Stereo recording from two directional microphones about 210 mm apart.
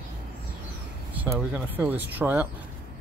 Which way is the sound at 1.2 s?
10° right (ahead or behind).